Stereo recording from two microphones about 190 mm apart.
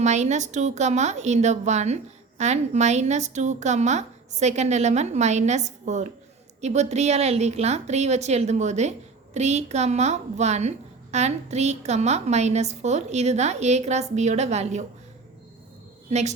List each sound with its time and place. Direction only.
0.0 s a woman's voice: 35° right (ahead or behind)
16.0 s a woman's voice: 35° right (ahead or behind)